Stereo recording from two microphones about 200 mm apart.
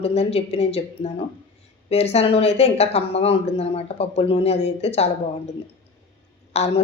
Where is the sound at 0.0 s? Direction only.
30° left (ahead or behind).